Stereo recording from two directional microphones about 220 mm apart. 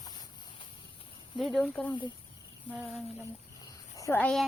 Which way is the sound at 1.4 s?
Centre (ahead or behind).